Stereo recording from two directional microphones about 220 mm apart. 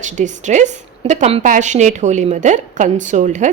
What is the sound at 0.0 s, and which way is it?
A woman's voice, 35° right (ahead or behind).